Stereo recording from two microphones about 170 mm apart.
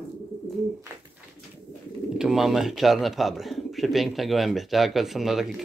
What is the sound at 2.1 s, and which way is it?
Speech, 5° right (ahead or behind).